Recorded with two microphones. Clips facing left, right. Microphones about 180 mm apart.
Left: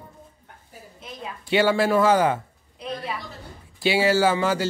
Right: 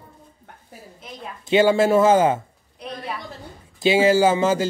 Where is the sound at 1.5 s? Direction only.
20° right (ahead or behind).